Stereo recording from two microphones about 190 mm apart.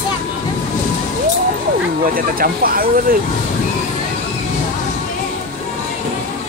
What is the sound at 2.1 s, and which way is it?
Speech, 50° right (ahead or behind).